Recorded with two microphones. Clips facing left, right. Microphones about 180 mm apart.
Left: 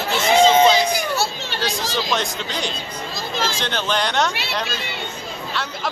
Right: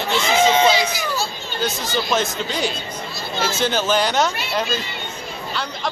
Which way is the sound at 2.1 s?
5° right (ahead or behind).